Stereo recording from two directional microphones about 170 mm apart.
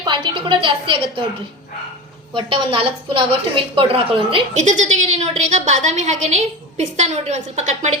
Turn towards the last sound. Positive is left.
turn(degrees=-40)  # may be behind; listen again after turning